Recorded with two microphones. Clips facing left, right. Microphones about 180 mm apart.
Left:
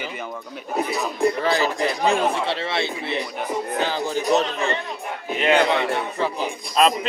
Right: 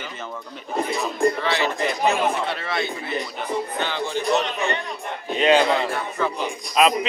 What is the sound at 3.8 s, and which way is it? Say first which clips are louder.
Speech: left 2 dB; 40° left (ahead or behind).